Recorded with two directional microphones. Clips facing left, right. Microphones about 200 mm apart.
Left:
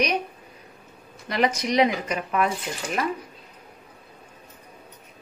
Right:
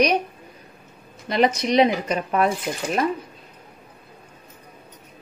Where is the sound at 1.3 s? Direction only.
25° right (ahead or behind).